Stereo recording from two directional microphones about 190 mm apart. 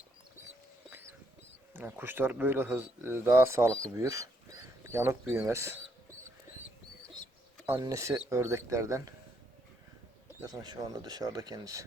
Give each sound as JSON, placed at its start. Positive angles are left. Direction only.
{"t": 1.7, "sound": "speech", "side_deg": -10}
{"t": 3.9, "sound": "a sound", "side_deg": -15}
{"t": 5.5, "sound": "speech", "side_deg": -15}
{"t": 7.7, "sound": "speech", "side_deg": -15}
{"t": 10.4, "sound": "speech", "side_deg": -20}